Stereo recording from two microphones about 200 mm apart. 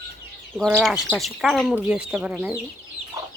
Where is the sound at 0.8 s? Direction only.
Centre (ahead or behind).